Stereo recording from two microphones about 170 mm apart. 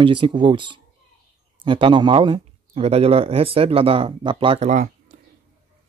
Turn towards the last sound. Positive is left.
turn(degrees=-35)  # may be behind; listen again after turning